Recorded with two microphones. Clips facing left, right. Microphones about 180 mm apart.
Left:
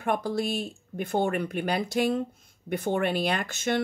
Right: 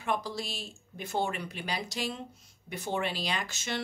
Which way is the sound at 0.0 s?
55° left (ahead or behind).